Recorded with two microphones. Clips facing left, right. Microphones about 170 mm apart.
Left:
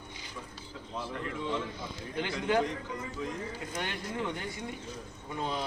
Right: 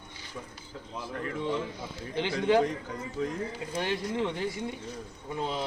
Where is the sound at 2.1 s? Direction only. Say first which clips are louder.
Right 5 dB; 30° right (ahead or behind).